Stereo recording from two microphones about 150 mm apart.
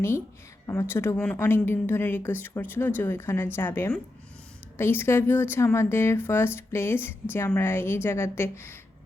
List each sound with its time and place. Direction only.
0.7 s speech: 15° left (ahead or behind)